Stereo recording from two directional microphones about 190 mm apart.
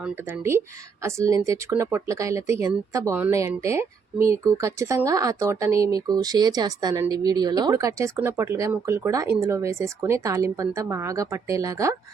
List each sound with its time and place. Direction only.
0.0 s speech: 15° right (ahead or behind)